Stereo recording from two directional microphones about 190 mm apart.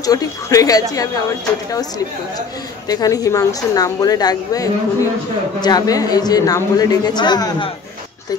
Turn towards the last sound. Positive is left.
turn(degrees=20)  # may be behind; listen again after turning